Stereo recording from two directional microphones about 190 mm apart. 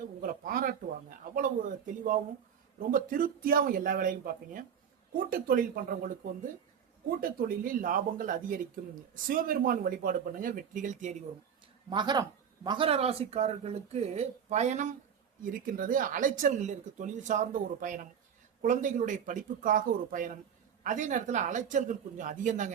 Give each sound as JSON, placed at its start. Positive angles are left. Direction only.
{"t": 0.0, "sound": "speech", "side_deg": -45}
{"t": 11.9, "sound": "speech", "side_deg": -25}